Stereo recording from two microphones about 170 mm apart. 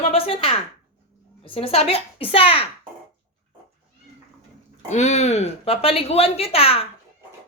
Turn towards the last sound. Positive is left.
turn(degrees=35)  # may be behind; listen again after turning